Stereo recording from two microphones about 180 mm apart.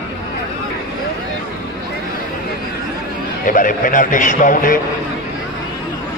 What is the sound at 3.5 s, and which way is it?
A man's voice, 50° left (ahead or behind).